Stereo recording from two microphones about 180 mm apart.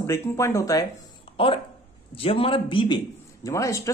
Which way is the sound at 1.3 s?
30° left (ahead or behind).